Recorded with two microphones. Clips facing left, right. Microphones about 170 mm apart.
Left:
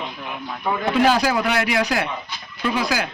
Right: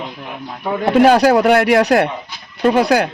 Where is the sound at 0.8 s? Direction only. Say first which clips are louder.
Right 8 dB; 55° right (ahead or behind).